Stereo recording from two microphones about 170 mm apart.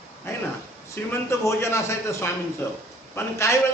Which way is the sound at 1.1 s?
15° left (ahead or behind).